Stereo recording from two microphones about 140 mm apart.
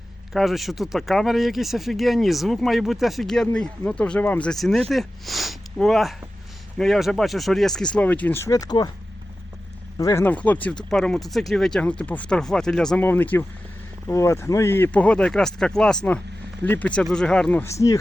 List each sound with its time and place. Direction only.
0.3 s speech: centre (ahead or behind); by 8.9 s 30° left (ahead or behind)
10.0 s speech: 25° left (ahead or behind)
10.2 s speech: 10° left (ahead or behind)